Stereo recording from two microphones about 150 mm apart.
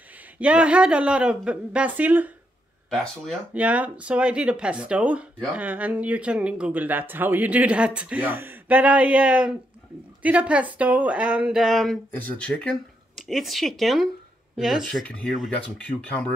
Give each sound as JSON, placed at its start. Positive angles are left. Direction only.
{"t": 0.4, "sound": "speech", "side_deg": -10}
{"t": 2.9, "sound": "speech", "side_deg": 0}
{"t": 3.5, "sound": "speech", "side_deg": -10}